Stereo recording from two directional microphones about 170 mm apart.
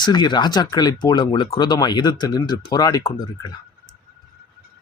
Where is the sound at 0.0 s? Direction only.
25° left (ahead or behind).